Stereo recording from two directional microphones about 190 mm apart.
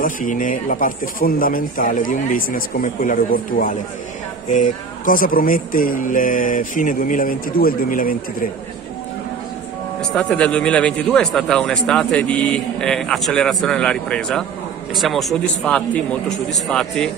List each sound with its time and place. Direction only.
0.0 s speech: 45° left (ahead or behind)
9.9 s speech: 5° left (ahead or behind)